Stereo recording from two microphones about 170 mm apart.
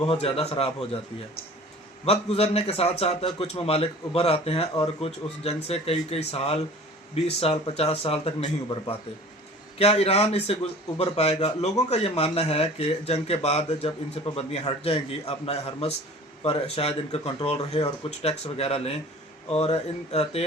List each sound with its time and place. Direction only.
0.0 s a man's voice: 35° left (ahead or behind)
2.0 s a man's voice: 35° left (ahead or behind)